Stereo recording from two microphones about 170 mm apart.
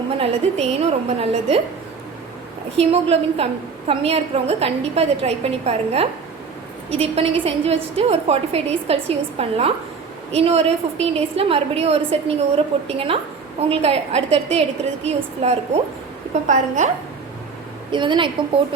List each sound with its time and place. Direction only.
0.2 s a woman's voice: 40° right (ahead or behind)
2.7 s a woman's voice: 35° right (ahead or behind)
17.9 s a woman's voice: 30° right (ahead or behind)